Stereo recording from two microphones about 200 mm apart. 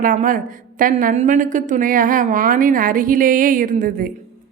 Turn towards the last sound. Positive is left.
turn(degrees=-45)  # may be behind; listen again after turning